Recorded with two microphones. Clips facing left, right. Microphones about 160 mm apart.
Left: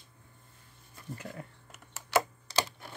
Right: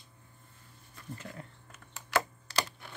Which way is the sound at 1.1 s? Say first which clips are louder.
Left 3 dB; 10° left (ahead or behind).